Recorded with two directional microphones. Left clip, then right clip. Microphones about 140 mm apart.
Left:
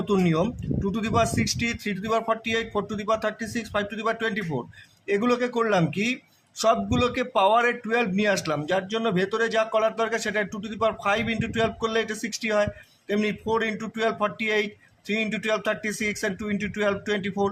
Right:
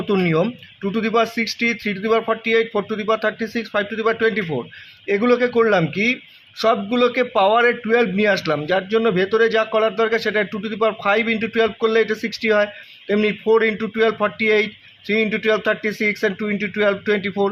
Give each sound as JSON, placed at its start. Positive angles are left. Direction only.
{"t": 0.1, "sound": "a man's voice", "side_deg": -30}